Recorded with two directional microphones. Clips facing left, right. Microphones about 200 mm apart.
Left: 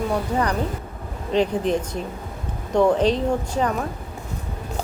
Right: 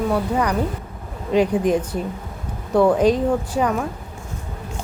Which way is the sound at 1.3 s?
10° right (ahead or behind).